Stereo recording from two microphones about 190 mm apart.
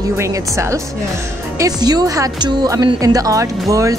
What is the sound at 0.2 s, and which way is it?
Speech, 15° right (ahead or behind).